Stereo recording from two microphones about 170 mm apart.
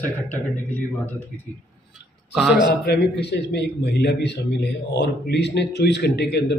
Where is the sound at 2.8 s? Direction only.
70° left (ahead or behind).